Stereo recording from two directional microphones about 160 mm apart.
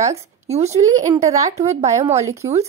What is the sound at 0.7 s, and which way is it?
A woman's voice, 20° right (ahead or behind).